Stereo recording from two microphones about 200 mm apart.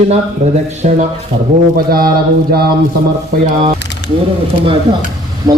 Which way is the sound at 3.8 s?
60° left (ahead or behind).